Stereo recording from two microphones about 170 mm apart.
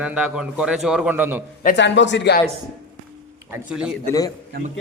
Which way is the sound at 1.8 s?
90° left.